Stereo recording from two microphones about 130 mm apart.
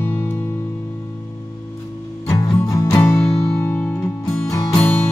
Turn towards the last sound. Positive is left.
turn(degrees=20)  # may be behind; listen again after turning